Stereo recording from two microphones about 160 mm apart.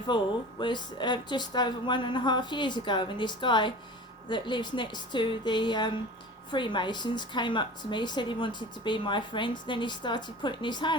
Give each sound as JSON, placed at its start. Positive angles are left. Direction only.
{"t": 0.1, "sound": "a woman's voice", "side_deg": 30}